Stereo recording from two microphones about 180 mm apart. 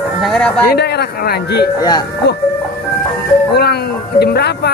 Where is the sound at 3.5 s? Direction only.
60° left (ahead or behind).